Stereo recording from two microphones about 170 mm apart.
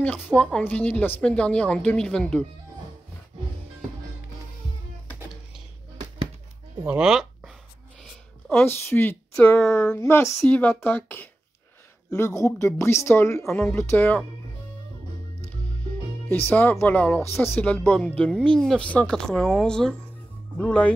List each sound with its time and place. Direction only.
0.4 s a woman's voice: 5° left (ahead or behind)
6.9 s speech: 5° right (ahead or behind)
8.5 s a woman's voice: 10° left (ahead or behind)
16.4 s a woman's voice: 10° left (ahead or behind)